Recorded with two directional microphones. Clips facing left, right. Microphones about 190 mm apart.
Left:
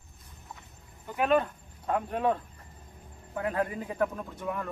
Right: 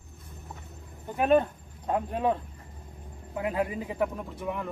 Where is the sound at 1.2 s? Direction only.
30° right (ahead or behind).